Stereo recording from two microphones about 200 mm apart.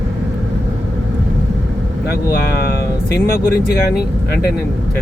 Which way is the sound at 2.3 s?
50° left (ahead or behind).